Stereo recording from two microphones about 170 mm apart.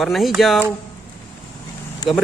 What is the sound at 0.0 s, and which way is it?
Speech, centre (ahead or behind).